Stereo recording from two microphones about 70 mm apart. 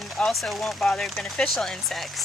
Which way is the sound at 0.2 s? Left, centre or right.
Centre.